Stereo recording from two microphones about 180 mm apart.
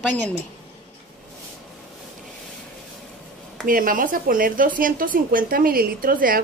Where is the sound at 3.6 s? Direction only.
50° right (ahead or behind).